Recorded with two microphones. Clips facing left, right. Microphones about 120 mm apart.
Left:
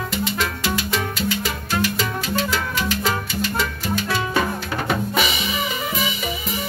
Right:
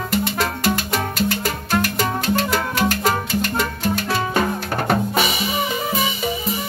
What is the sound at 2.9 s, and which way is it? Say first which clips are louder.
Salsa music: right 3 dB; 50° right (ahead or behind).